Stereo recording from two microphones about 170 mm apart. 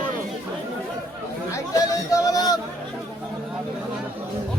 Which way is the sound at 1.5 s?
20° left (ahead or behind).